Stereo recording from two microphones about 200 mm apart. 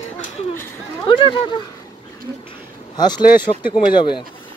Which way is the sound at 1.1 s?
25° left (ahead or behind).